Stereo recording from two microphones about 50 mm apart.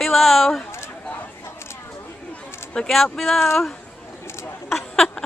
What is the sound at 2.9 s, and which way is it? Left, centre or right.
Speech, centre.